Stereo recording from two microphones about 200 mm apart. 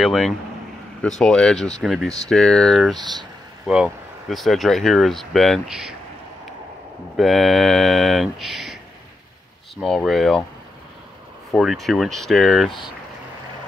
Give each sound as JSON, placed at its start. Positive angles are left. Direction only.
{"t": 0.0, "sound": "speech", "side_deg": 0}
{"t": 3.0, "sound": "speech", "side_deg": -20}
{"t": 3.6, "sound": "speech", "side_deg": -5}
{"t": 7.2, "sound": "speech", "side_deg": 0}
{"t": 9.8, "sound": "speech", "side_deg": 0}
{"t": 11.5, "sound": "speech", "side_deg": 0}